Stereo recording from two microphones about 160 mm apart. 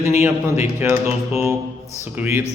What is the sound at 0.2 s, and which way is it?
Speech, 15° right (ahead or behind).